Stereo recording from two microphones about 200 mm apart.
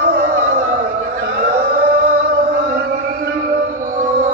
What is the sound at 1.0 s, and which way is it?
Chant, 55° right (ahead or behind).